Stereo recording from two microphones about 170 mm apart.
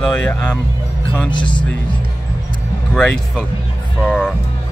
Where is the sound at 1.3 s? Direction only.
30° left (ahead or behind).